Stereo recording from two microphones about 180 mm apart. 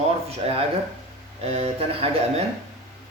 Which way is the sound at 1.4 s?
35° right (ahead or behind).